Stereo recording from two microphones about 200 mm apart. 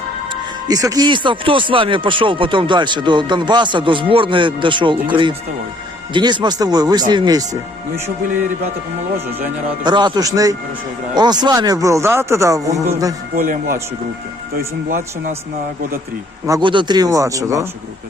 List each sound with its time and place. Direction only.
0.3 s speech: 20° right (ahead or behind)
9.8 s speech: 20° right (ahead or behind)
13.3 s speech: 50° right (ahead or behind)
16.5 s speech: 25° right (ahead or behind)